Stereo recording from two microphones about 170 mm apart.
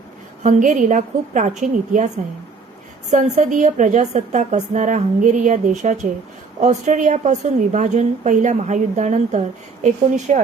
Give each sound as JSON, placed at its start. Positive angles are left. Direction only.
{"t": 0.4, "sound": "a woman's voice", "side_deg": -50}
{"t": 3.1, "sound": "a woman's voice", "side_deg": -45}